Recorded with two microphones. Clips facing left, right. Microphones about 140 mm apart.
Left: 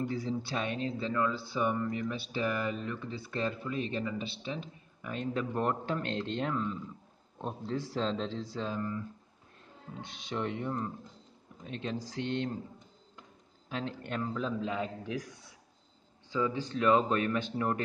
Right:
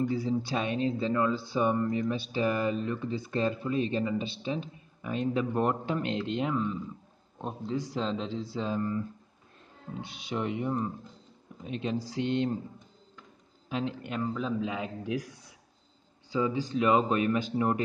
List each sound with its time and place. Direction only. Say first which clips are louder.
0.1 s speech: right 5 dB; 15° right (ahead or behind)
8.5 s speech: right 5 dB; 20° right (ahead or behind)
10.0 s speech: right 2 dB; 5° right (ahead or behind)
13.7 s a man's voice: right 5 dB; 15° right (ahead or behind)
14.0 s speech: right 2 dB; 5° right (ahead or behind)
16.3 s speech: right 3 dB; 15° right (ahead or behind)